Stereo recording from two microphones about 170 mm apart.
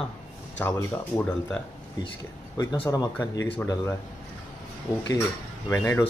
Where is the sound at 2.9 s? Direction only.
20° left (ahead or behind).